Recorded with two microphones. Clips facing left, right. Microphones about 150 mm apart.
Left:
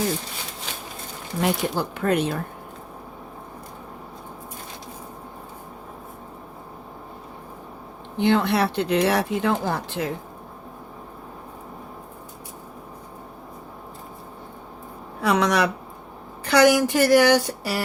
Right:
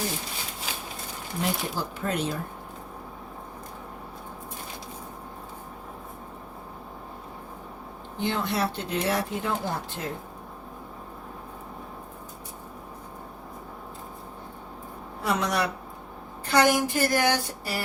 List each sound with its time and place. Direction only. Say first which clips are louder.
1.4 s speech: left 6 dB; 65° left (ahead or behind)
8.2 s speech: left 7 dB; 70° left (ahead or behind); by 10.1 s 85° left
15.2 s speech: left 6 dB; 85° left